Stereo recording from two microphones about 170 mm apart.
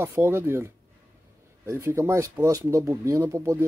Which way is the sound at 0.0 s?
10° right (ahead or behind).